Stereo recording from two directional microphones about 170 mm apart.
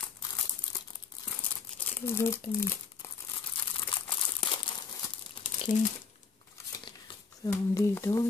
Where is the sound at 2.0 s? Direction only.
15° left (ahead or behind).